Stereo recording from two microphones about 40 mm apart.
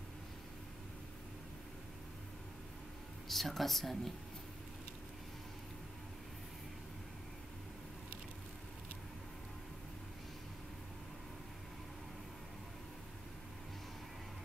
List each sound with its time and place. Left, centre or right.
3.3 s speech: centre